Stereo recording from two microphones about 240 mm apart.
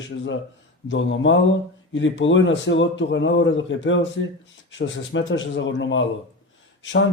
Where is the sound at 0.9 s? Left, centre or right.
Left.